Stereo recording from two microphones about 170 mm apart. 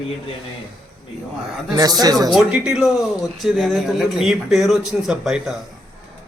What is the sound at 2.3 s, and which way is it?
Speech, 5° right (ahead or behind).